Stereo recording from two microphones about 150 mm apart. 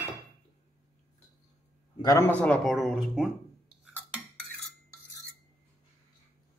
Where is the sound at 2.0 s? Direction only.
25° left (ahead or behind).